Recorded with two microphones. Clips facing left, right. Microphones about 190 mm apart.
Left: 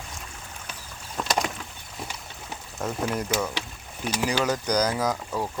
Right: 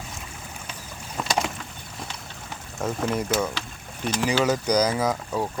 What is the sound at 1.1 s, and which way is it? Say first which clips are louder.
Rowboat: right 1 dB; centre (ahead or behind).